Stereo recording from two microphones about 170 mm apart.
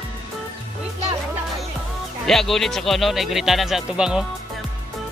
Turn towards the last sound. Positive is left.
turn(degrees=-5)  # may be behind; listen again after turning